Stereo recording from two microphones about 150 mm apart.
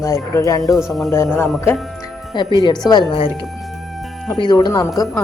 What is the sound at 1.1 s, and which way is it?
Speech, 20° left (ahead or behind).